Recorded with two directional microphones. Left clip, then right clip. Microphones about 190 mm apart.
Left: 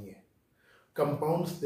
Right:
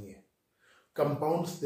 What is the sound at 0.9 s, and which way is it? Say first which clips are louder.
Speech: even; centre (ahead or behind).